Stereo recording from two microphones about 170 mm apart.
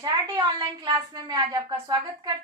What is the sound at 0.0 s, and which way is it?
A woman's voice, 25° right (ahead or behind).